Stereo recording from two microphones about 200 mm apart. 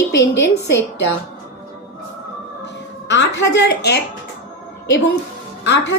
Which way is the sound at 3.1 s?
60° left (ahead or behind).